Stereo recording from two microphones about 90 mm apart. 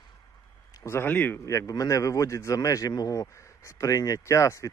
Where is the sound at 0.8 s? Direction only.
25° left (ahead or behind).